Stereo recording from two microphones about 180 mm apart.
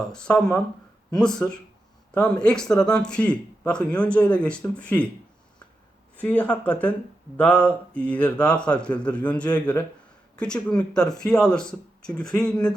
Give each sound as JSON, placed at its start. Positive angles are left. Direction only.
{"t": 0.1, "sound": "speech", "side_deg": 5}
{"t": 6.1, "sound": "speech", "side_deg": 10}